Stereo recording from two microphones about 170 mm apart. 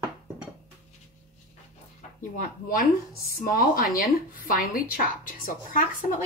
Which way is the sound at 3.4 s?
55° left (ahead or behind).